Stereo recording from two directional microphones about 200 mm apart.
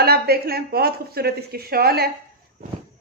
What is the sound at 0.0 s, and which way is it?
Speech, 50° right (ahead or behind).